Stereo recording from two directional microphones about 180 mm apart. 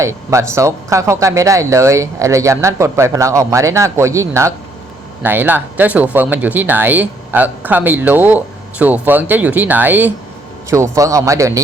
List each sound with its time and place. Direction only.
0.0 s speech: 15° right (ahead or behind)